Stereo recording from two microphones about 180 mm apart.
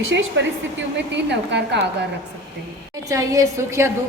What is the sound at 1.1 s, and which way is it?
Speech, 75° right (ahead or behind).